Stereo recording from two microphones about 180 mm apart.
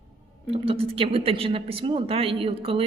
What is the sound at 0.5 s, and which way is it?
A man's voice, 30° right (ahead or behind).